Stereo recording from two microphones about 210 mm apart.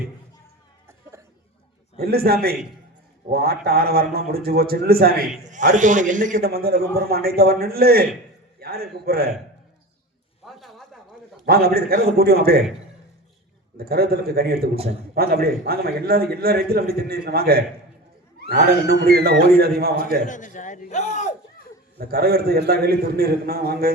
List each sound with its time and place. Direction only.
2.0 s a man's voice: 45° right (ahead or behind)
10.4 s a sound: centre (ahead or behind)
11.4 s a man's voice: 45° right (ahead or behind)
13.7 s a man's voice: 45° right (ahead or behind)
20.2 s a sound: 35° left (ahead or behind)
21.9 s a man's voice: 45° right (ahead or behind)